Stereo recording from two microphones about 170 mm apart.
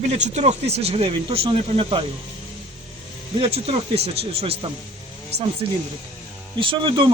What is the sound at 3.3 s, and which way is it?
Speech, 35° right (ahead or behind).